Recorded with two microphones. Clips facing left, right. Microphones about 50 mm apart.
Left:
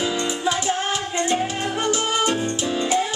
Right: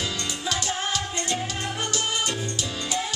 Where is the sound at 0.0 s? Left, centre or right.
Centre.